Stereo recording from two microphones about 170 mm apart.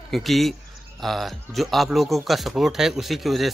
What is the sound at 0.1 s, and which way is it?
Speech, centre (ahead or behind).